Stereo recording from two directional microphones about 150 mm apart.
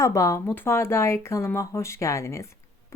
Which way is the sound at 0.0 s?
20° left (ahead or behind).